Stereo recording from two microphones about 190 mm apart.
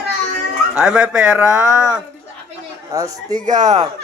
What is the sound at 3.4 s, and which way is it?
Speech, 40° right (ahead or behind).